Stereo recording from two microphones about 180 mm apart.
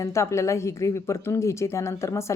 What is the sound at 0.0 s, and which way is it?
A woman's voice, 15° left (ahead or behind).